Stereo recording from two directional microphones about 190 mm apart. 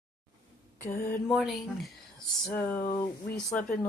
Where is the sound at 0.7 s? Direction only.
15° left (ahead or behind).